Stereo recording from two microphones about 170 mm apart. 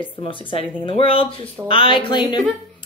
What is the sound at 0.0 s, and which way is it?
A woman's voice, 30° left (ahead or behind).